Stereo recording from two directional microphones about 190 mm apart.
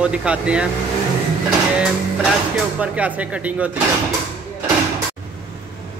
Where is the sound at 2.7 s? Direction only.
5° right (ahead or behind).